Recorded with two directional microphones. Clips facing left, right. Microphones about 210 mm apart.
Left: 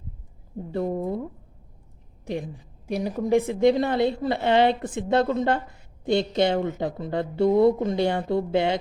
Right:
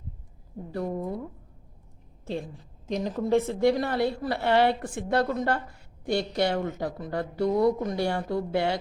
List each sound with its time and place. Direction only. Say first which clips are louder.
0.7 s a woman's voice: left 4 dB; 25° left (ahead or behind)
2.2 s a woman's voice: left 3 dB; 15° left (ahead or behind)